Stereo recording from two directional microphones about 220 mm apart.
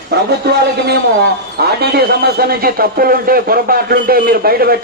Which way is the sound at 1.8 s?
45° right (ahead or behind).